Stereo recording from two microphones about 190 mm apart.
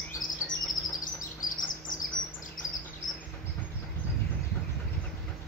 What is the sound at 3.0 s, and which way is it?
Chirp, 45° left (ahead or behind).